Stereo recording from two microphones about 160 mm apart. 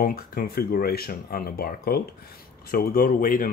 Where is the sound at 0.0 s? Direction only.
65° left (ahead or behind).